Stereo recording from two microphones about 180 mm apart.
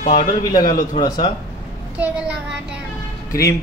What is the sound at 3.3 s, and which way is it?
Speech, 15° left (ahead or behind).